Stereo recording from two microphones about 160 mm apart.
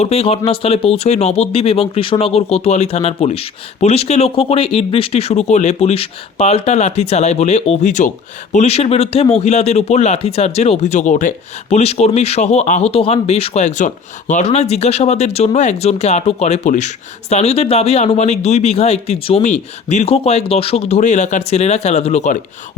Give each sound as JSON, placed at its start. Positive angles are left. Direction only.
{"t": 0.0, "sound": "a man's voice", "side_deg": 40}